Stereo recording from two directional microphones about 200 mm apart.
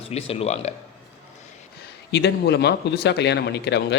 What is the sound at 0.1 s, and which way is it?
Speech, 30° left (ahead or behind).